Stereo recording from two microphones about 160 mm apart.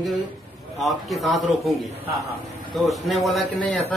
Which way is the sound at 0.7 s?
Centre (ahead or behind).